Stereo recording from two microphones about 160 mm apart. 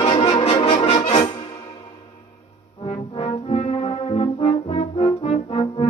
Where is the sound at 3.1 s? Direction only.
35° left (ahead or behind).